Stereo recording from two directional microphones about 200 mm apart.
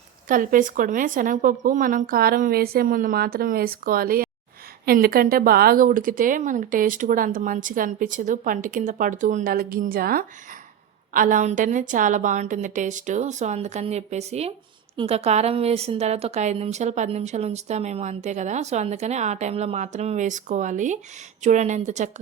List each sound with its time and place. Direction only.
0.3 s a woman's voice: 40° right (ahead or behind)